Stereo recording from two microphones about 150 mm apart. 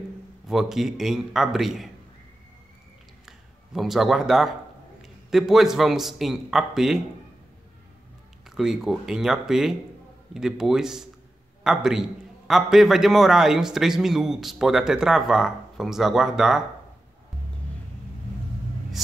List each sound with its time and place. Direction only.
0.5 s a man's voice: centre (ahead or behind)
3.3 s a man's voice: centre (ahead or behind)
8.5 s a man's voice: 5° right (ahead or behind)